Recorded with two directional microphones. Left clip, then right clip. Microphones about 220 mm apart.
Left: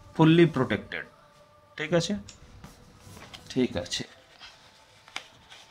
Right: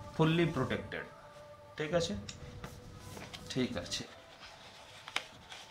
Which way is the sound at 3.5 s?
45° left (ahead or behind).